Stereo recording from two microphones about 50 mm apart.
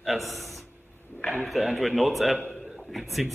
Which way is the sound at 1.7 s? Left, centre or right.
Centre.